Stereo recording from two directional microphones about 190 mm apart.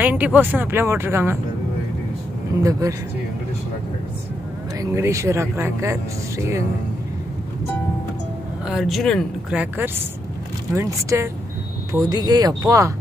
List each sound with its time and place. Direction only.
0.0 s speech: 10° right (ahead or behind)
2.6 s speech: 15° right (ahead or behind)
4.7 s speech: 15° right (ahead or behind)
8.6 s speech: centre (ahead or behind); by 12.9 s 20° right (ahead or behind)